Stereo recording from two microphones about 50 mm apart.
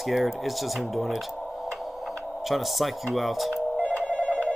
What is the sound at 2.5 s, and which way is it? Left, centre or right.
Speech, centre.